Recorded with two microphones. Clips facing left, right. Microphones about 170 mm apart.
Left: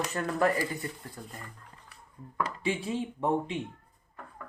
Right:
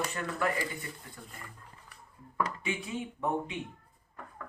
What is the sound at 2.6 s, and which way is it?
Speech, 30° left (ahead or behind).